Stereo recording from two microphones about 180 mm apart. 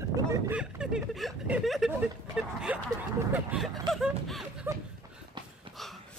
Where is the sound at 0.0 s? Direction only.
15° right (ahead or behind).